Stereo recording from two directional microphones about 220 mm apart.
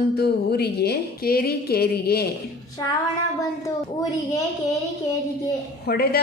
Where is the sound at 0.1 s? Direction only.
45° left (ahead or behind).